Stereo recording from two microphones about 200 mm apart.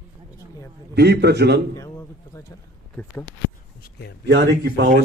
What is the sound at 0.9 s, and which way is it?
Speech, 55° right (ahead or behind).